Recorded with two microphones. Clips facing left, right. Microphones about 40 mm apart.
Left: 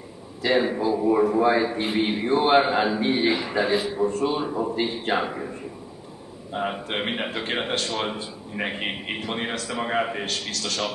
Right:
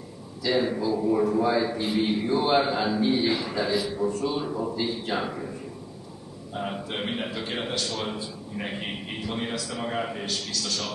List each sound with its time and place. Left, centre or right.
0.4 s a man's voice: left
4.7 s a man's voice: left
10.5 s a man's voice: left